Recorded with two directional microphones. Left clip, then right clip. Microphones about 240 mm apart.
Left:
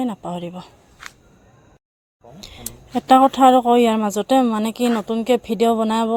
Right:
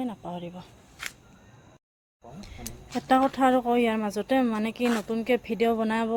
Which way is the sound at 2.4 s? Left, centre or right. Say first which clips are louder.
Left 8 dB; left.